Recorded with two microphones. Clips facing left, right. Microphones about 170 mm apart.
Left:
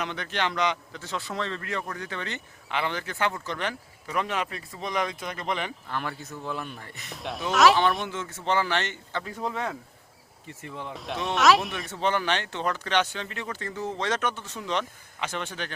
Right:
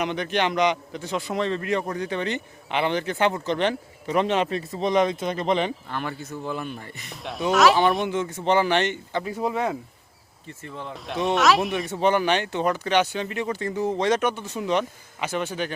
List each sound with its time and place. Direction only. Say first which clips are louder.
0.0 s a man's voice: right 6 dB; 15° right (ahead or behind)
5.9 s speech: right 3 dB; centre (ahead or behind)
8.0 s speech: right 7 dB; 15° right (ahead or behind)
10.6 s speech: right 2 dB; 15° left (ahead or behind)
10.9 s speech: right 6 dB; centre (ahead or behind)
11.9 s speech: right 5 dB; 15° right (ahead or behind)